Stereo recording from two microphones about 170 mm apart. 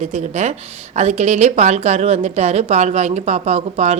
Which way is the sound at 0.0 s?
40° right (ahead or behind).